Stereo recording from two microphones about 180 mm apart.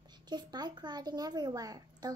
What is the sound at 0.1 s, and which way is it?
A child's voice, 25° right (ahead or behind).